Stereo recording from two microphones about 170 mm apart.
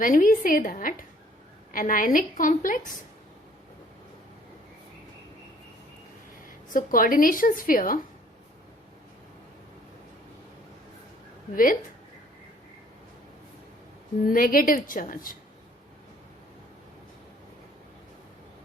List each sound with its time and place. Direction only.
0.0 s a woman's voice: 50° left (ahead or behind)
6.7 s a woman's voice: 55° left (ahead or behind)
11.5 s a woman's voice: 55° left (ahead or behind)
14.3 s a woman's voice: 55° left (ahead or behind)